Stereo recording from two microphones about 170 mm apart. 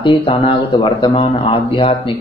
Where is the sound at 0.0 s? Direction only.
30° left (ahead or behind).